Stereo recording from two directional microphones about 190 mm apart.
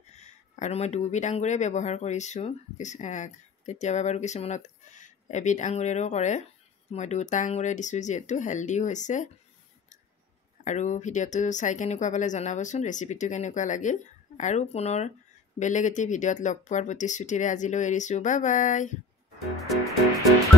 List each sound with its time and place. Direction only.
0.1 s speech: 35° left (ahead or behind)
10.6 s speech: 40° left (ahead or behind)